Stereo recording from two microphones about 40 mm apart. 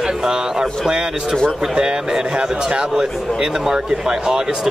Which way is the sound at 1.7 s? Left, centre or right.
Right.